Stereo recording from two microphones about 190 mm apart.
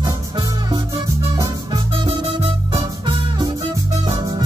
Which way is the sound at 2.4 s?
25° right (ahead or behind).